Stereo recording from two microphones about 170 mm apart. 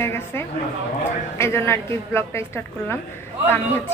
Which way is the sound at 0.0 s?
15° left (ahead or behind).